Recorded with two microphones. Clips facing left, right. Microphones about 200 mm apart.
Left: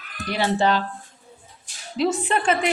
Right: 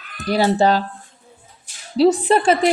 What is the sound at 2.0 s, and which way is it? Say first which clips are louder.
Speech: right 8 dB; 35° right (ahead or behind).